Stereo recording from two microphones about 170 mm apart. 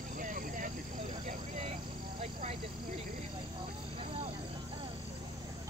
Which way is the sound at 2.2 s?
35° right (ahead or behind).